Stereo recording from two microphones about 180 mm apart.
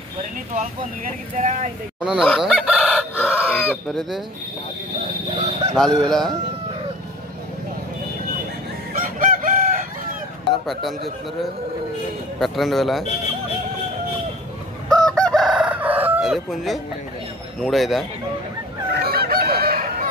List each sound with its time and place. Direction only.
0.6 s speech: 45° right (ahead or behind)
2.0 s crowing: 5° right (ahead or behind)
3.6 s speech: centre (ahead or behind)
5.4 s fowl: 35° right (ahead or behind)
6.0 s a man's voice: centre (ahead or behind)
8.9 s chicken: 50° right (ahead or behind)
10.7 s a man's voice: centre (ahead or behind)
12.4 s a man's voice: centre (ahead or behind)
14.9 s chicken: 5° left (ahead or behind)
17.6 s a man's voice: centre (ahead or behind)
18.9 s chicken: 60° right (ahead or behind)